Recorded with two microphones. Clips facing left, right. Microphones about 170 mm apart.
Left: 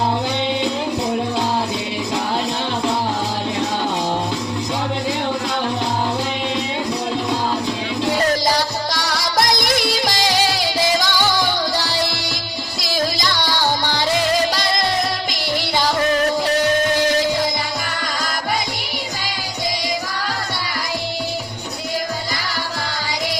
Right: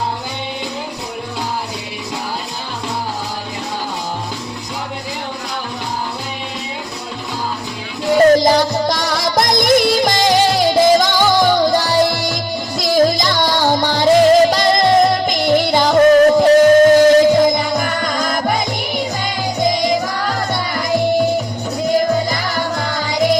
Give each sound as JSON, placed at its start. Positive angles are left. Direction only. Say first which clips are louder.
{"t": 8.3, "sound": "music", "louder": "right 8 dB", "side_deg": -50}
{"t": 19.6, "sound": "music", "louder": "right 8 dB", "side_deg": -50}
{"t": 21.9, "sound": "music", "louder": "right 10 dB", "side_deg": -50}